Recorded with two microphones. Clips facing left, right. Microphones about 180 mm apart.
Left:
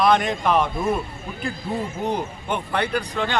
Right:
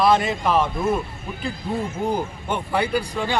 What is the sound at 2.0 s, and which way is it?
Speech, 5° right (ahead or behind).